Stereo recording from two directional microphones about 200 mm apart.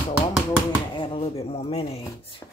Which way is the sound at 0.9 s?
25° left (ahead or behind).